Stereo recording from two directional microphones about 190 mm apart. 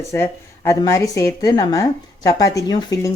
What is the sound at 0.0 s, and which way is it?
Speech, 15° left (ahead or behind).